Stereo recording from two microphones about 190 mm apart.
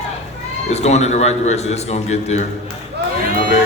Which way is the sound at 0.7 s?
35° left (ahead or behind).